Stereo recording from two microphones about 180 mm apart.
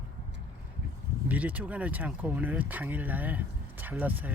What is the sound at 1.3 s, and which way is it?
Speech, 10° right (ahead or behind).